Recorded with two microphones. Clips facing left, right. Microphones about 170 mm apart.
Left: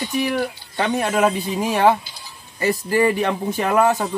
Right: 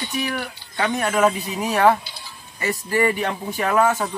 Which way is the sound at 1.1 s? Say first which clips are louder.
Left 1 dB; 15° left (ahead or behind).